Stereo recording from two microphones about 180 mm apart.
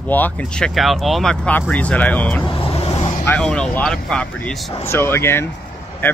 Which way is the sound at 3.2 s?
5° left (ahead or behind).